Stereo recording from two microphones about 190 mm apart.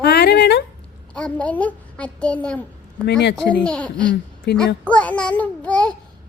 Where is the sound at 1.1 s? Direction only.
5° left (ahead or behind).